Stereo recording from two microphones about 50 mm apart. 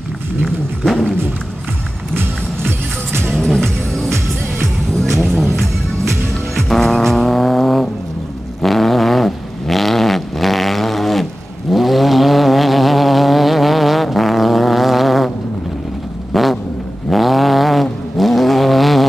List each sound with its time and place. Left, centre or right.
0.5 s dog: centre
2.1 s music: right
3.3 s music: centre
3.6 s music: right
5.1 s music: centre
8.6 s vehicle: centre
16.3 s vehicle: centre